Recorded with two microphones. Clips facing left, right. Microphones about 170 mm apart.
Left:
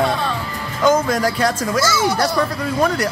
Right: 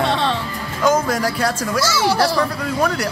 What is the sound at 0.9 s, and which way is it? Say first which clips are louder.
Speech: left 2 dB; 5° right (ahead or behind).